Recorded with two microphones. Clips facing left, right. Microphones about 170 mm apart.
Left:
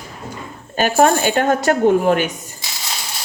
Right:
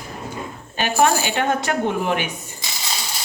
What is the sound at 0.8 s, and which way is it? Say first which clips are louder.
Speech: left 4 dB; 45° left (ahead or behind).